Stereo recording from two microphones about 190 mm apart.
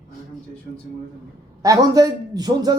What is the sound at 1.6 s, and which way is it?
Speech, 20° right (ahead or behind).